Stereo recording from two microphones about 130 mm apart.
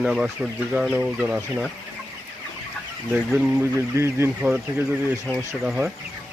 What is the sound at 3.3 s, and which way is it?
Speech, 10° right (ahead or behind).